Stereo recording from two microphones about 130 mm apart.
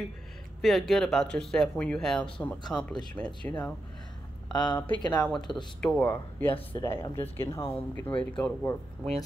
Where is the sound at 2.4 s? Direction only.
15° left (ahead or behind).